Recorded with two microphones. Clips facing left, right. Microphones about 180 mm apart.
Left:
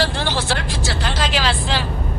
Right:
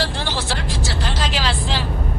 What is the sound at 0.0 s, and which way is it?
Vehicle, 65° left (ahead or behind).